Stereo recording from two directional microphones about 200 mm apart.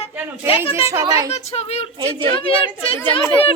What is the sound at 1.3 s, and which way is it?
Speech, 30° left (ahead or behind).